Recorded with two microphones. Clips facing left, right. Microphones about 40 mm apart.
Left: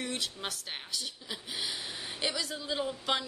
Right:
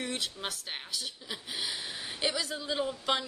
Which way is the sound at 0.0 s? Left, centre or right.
Centre.